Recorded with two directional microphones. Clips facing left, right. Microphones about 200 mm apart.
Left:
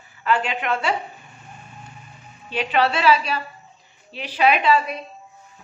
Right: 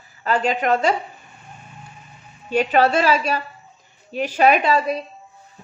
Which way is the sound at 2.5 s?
45° right (ahead or behind).